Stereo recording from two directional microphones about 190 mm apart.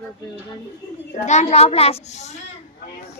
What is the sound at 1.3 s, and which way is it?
A child's voice, 35° left (ahead or behind).